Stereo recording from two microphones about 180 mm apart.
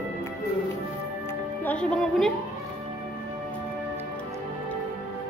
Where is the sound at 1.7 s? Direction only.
5° left (ahead or behind).